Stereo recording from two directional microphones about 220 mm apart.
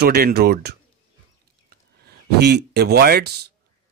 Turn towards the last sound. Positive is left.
turn(degrees=-45)  # may be behind; listen again after turning